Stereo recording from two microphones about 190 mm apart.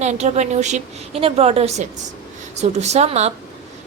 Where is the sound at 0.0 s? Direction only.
35° right (ahead or behind).